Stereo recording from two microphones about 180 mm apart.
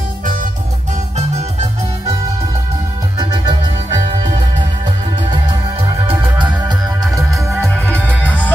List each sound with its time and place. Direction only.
0.2 s music: 45° right (ahead or behind)
3.2 s music: 20° right (ahead or behind)
7.0 s music: centre (ahead or behind)